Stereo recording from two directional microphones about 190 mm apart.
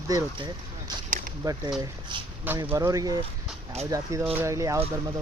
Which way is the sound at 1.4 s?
20° right (ahead or behind).